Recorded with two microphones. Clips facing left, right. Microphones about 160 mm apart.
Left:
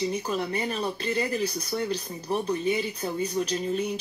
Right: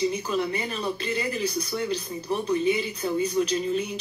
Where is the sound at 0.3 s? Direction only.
45° left (ahead or behind).